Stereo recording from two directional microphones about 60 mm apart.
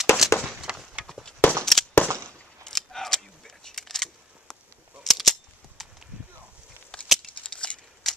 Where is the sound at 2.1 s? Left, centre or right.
Right.